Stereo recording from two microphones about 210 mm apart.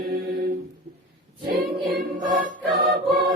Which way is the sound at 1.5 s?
45° right (ahead or behind).